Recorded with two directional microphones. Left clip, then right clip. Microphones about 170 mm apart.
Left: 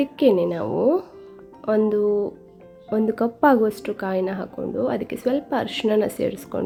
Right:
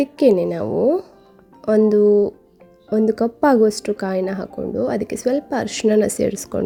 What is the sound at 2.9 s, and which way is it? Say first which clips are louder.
Speech: right 4 dB; 35° right (ahead or behind).